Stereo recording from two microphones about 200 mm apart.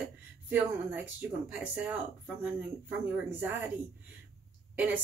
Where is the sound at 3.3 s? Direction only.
10° right (ahead or behind).